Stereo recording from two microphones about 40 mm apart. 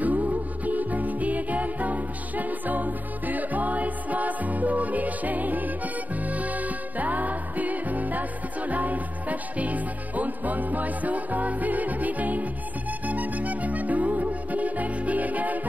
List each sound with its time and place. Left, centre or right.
0.0 s music: right